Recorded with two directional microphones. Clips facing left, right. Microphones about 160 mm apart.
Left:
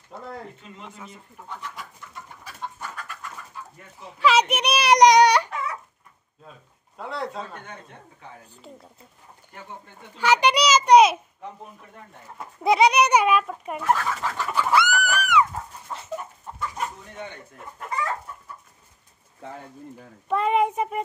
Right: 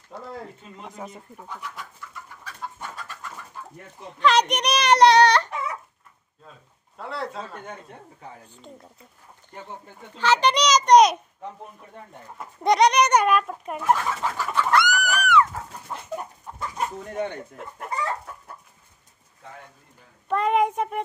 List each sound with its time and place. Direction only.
0.1 s speech: 5° right (ahead or behind)
0.7 s speech: 40° right (ahead or behind)
1.5 s speech: centre (ahead or behind)
2.8 s bird: 25° right (ahead or behind)
4.0 s a child's voice: 5° left (ahead or behind)
7.0 s speech: centre (ahead or behind)
10.1 s a child's voice: 10° left (ahead or behind)
13.8 s speech: 15° right (ahead or behind)
14.2 s bird: 5° right (ahead or behind)
15.1 s dog: 10° left (ahead or behind)
15.9 s chicken: centre (ahead or behind)
20.2 s speech: centre (ahead or behind)